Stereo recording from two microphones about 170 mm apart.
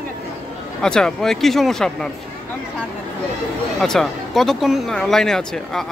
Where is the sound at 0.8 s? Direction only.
5° left (ahead or behind).